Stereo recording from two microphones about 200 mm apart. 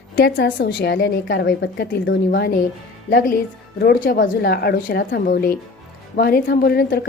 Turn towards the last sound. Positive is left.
turn(degrees=50)  # may be behind; listen again after turning